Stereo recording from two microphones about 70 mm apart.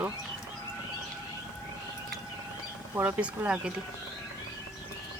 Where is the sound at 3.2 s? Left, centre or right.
Centre.